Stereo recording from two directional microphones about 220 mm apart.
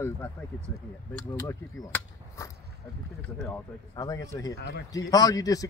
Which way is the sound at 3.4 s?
15° left (ahead or behind).